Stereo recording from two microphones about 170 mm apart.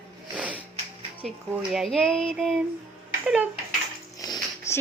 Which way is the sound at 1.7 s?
Centre (ahead or behind).